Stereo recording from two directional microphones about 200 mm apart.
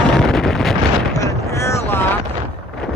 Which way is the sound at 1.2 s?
15° left (ahead or behind).